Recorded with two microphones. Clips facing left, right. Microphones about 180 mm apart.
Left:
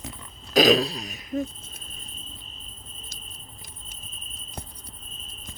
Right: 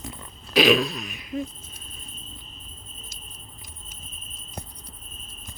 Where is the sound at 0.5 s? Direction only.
40° left (ahead or behind).